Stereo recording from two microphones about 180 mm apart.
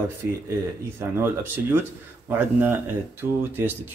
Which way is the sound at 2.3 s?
10° right (ahead or behind).